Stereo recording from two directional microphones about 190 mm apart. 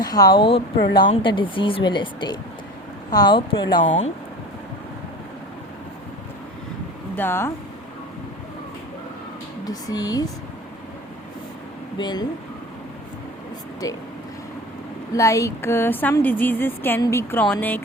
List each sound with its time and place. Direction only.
0.0 s a woman's voice: 20° left (ahead or behind)
7.2 s speech: 10° left (ahead or behind)
9.6 s a woman's voice: 20° left (ahead or behind)
11.9 s a woman's voice: 20° left (ahead or behind)
13.8 s a woman's voice: 20° left (ahead or behind)
15.1 s speech: 15° left (ahead or behind)